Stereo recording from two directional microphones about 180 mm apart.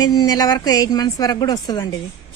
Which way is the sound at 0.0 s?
20° left (ahead or behind).